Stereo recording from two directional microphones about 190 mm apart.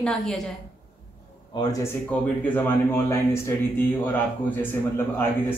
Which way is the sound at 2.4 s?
10° left (ahead or behind).